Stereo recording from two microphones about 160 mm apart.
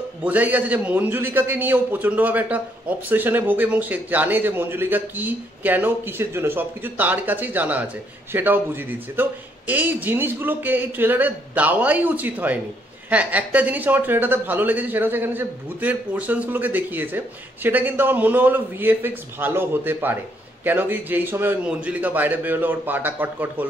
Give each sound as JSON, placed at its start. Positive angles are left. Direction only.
{"t": 0.2, "sound": "a man's voice", "side_deg": -10}